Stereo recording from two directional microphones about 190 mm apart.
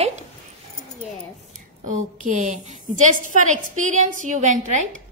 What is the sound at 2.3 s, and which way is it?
A woman's voice, 40° right (ahead or behind).